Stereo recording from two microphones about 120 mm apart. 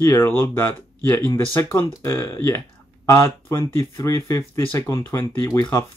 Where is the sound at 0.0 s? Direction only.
20° left (ahead or behind).